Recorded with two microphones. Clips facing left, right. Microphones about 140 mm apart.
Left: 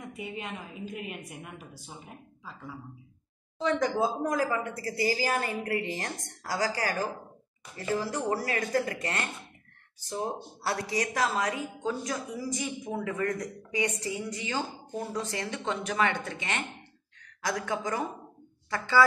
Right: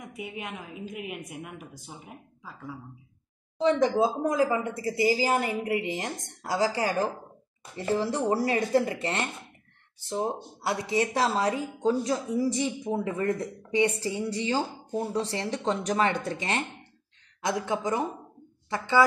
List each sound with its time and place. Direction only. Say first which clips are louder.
0.2 s a woman's voice: right 1 dB; 10° right (ahead or behind)
3.5 s speech: right 4 dB; 25° right (ahead or behind)
17.4 s speech: right 3 dB; 25° right (ahead or behind)